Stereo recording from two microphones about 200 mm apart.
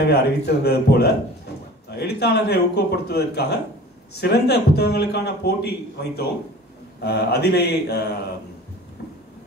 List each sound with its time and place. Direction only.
0.0 s a man's voice: 55° left (ahead or behind)